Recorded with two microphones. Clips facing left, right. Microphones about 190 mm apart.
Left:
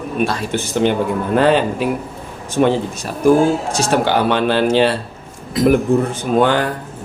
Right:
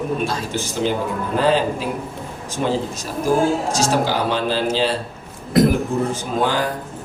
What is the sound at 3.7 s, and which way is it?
Speech, 65° left (ahead or behind).